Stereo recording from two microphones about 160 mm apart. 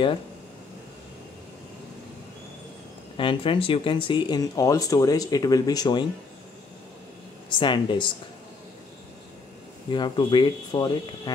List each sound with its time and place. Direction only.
3.2 s speech: 35° left (ahead or behind)
7.5 s speech: 30° left (ahead or behind)
9.8 s speech: 30° left (ahead or behind)